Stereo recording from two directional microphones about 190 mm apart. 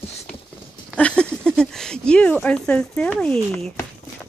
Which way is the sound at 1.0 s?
5° left (ahead or behind).